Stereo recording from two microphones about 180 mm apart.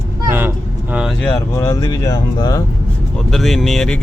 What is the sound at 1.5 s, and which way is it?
Speech, 15° left (ahead or behind).